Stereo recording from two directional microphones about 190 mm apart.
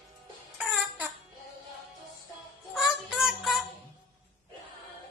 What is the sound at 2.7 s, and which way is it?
Child singing, centre (ahead or behind).